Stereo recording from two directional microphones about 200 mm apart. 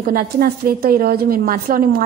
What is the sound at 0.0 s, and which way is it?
A woman's voice, 45° right (ahead or behind).